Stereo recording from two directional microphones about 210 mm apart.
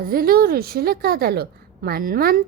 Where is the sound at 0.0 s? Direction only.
45° right (ahead or behind).